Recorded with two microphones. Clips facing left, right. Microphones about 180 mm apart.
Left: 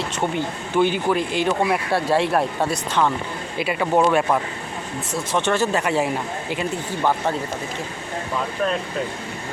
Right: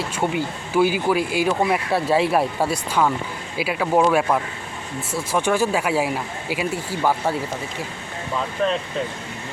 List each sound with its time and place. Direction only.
0.2 s speech: 5° right (ahead or behind)